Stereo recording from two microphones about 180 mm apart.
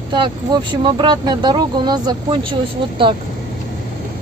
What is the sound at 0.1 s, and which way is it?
Speech, 25° right (ahead or behind).